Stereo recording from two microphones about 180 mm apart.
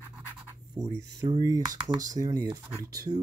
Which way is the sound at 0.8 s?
15° right (ahead or behind).